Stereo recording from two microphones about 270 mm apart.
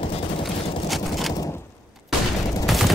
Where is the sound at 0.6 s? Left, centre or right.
Left.